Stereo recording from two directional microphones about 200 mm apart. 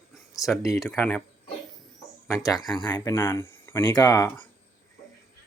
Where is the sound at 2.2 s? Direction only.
15° left (ahead or behind).